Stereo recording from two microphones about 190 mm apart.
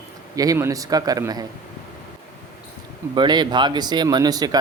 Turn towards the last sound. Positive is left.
turn(degrees=-20)  # may be behind; listen again after turning